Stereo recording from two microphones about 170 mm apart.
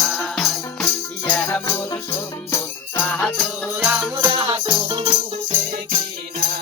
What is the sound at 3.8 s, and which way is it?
Music, 10° right (ahead or behind).